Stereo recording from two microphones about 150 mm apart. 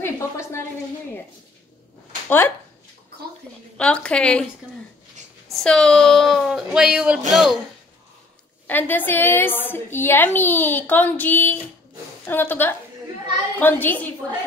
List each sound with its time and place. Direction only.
0.0 s a woman's voice: 20° left (ahead or behind)
2.2 s speech: 15° left (ahead or behind)
3.7 s a woman's voice: 5° left (ahead or behind)
5.5 s speech: 5° left (ahead or behind)
8.6 s a woman's voice: 10° left (ahead or behind)